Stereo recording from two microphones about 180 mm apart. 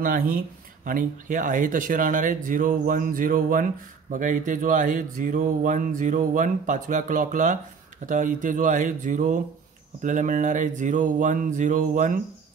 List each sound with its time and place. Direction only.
0.0 s speech: 50° right (ahead or behind)